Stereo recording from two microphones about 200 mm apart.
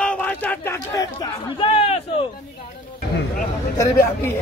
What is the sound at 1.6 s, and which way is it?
Speech, 30° left (ahead or behind).